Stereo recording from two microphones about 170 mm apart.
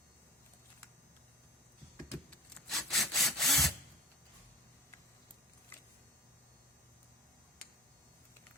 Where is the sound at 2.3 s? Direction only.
Centre (ahead or behind).